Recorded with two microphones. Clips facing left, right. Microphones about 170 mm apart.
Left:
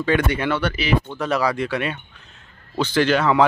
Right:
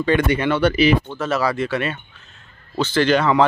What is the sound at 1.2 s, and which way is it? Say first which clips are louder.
Speech: right 1 dB; 15° left (ahead or behind).